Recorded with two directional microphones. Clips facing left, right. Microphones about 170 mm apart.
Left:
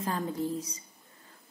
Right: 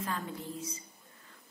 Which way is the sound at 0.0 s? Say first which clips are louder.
Left 6 dB; 35° left (ahead or behind).